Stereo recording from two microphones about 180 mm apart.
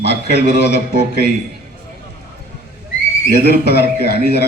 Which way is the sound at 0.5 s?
70° left (ahead or behind).